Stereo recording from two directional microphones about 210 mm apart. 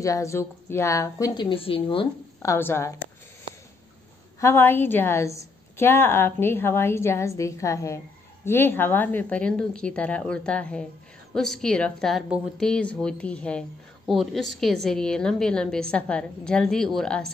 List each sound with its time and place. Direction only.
0.0 s a woman's voice: 15° left (ahead or behind)
2.4 s a woman's voice: 10° left (ahead or behind)
4.4 s a woman's voice: 10° left (ahead or behind)